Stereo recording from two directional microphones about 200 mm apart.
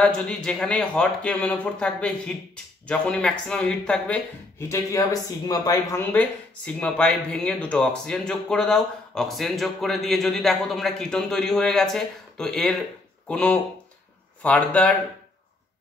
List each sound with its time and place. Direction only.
0.0 s speech: 5° left (ahead or behind)